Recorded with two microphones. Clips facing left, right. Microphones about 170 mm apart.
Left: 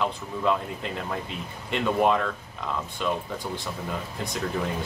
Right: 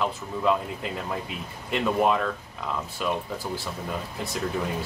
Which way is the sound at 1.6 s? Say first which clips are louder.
Even; centre (ahead or behind).